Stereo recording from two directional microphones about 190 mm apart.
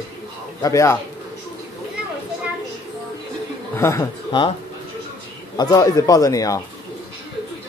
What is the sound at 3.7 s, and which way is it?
Speech, 15° left (ahead or behind).